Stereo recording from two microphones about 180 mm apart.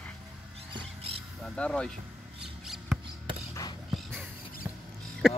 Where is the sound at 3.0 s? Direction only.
25° right (ahead or behind).